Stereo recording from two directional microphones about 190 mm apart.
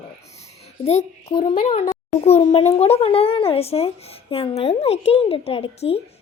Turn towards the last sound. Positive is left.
turn(degrees=30)  # may be behind; listen again after turning